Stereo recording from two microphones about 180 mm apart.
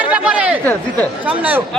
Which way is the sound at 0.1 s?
5° right (ahead or behind).